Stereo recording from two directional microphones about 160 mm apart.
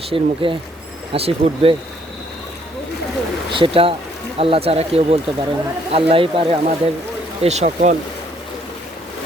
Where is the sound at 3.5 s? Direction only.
35° right (ahead or behind).